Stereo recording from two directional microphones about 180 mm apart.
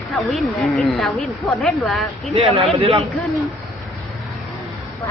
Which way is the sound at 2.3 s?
30° right (ahead or behind).